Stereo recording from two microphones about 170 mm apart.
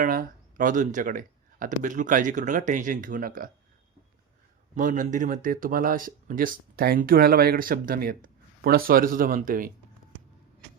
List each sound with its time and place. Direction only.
0.0 s speech: 55° right (ahead or behind)
4.7 s speech: 50° right (ahead or behind)